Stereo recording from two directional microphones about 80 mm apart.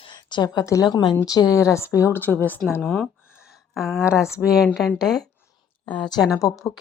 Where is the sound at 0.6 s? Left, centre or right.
Left.